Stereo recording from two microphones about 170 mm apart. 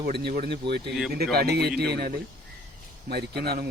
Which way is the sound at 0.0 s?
75° right (ahead or behind).